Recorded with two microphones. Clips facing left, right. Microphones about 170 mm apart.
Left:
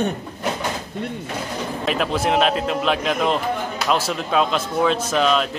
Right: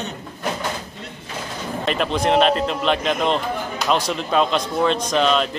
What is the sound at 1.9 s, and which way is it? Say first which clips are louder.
A man's voice: right 1 dB; 5° left (ahead or behind).